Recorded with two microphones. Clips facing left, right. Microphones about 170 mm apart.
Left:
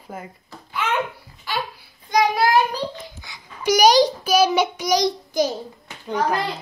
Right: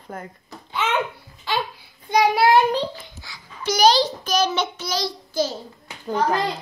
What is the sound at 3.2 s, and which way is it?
A child's voice, 15° left (ahead or behind).